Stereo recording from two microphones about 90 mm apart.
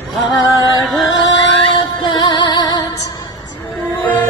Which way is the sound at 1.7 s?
55° left (ahead or behind).